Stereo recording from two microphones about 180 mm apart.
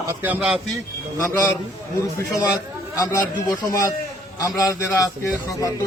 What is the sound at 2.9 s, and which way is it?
A man's voice, 20° left (ahead or behind).